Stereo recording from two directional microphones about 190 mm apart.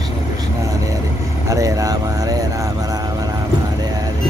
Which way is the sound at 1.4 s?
15° right (ahead or behind).